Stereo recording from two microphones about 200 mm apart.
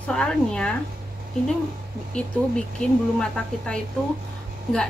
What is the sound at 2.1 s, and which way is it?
A woman's voice, 5° left (ahead or behind).